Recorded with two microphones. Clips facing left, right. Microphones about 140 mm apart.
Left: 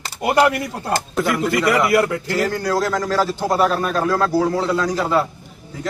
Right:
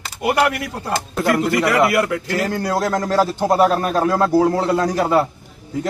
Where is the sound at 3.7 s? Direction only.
45° right (ahead or behind).